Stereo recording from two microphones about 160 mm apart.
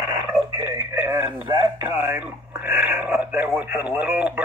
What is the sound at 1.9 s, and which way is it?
Speech, 10° right (ahead or behind).